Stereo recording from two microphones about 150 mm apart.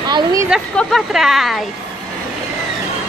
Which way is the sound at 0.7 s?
Centre (ahead or behind).